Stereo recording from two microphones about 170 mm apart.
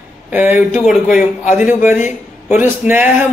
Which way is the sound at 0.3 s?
10° right (ahead or behind).